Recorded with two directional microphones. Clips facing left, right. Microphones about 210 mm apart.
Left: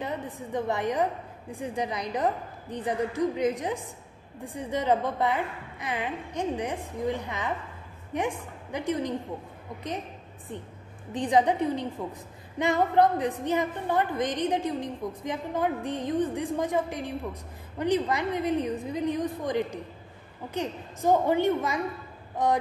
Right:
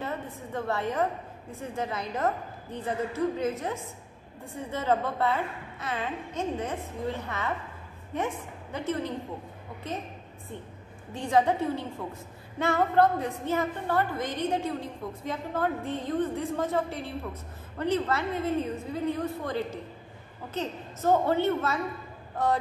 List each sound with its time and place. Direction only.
0.0 s a woman's voice: 15° left (ahead or behind)
11.1 s a woman's voice: 15° left (ahead or behind)